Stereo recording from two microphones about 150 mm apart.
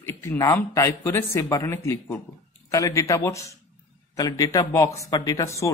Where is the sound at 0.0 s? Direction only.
15° left (ahead or behind).